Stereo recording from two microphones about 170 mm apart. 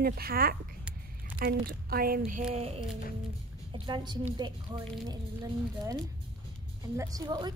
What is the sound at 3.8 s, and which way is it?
Speech, 25° right (ahead or behind).